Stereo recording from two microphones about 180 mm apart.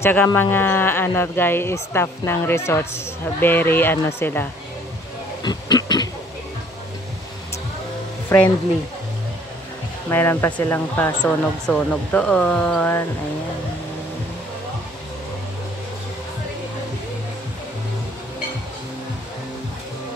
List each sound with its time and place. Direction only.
0.0 s speech: 10° left (ahead or behind)
5.4 s a sound: 20° left (ahead or behind)
8.3 s speech: 15° left (ahead or behind)
10.0 s speech: 10° left (ahead or behind)